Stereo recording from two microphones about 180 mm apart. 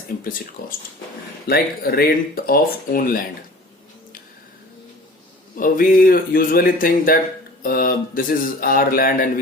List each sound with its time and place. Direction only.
0.6 s speech: 50° left (ahead or behind)
5.5 s speech: 50° left (ahead or behind)